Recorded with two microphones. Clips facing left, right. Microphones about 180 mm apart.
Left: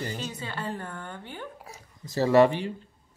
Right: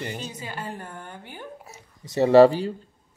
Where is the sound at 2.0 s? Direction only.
20° right (ahead or behind).